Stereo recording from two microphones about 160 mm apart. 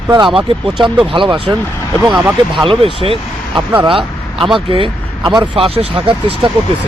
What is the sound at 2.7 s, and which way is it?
Speech, 35° right (ahead or behind).